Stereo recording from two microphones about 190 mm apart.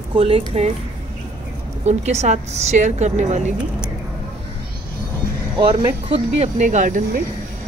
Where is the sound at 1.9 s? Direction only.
35° right (ahead or behind).